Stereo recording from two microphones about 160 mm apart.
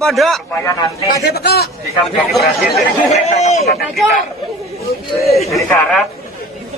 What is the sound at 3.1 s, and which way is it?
Speech, 45° left (ahead or behind).